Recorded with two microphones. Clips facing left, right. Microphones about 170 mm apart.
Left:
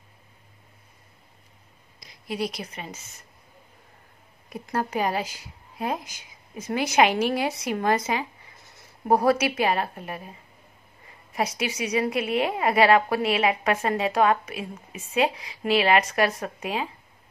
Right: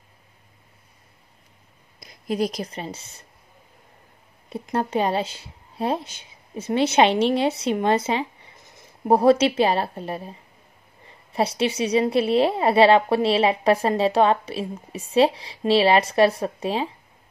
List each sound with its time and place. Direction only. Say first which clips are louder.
2.0 s a woman's voice: right 6 dB; 45° right (ahead or behind)
4.5 s a woman's voice: right 3 dB; 25° right (ahead or behind)